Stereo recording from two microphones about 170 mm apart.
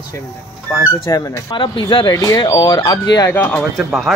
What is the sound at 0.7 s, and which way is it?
Speech, 20° left (ahead or behind).